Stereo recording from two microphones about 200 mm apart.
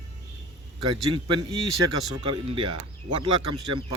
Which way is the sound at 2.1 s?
25° right (ahead or behind).